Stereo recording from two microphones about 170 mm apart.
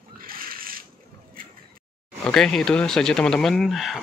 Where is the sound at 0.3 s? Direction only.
60° right (ahead or behind).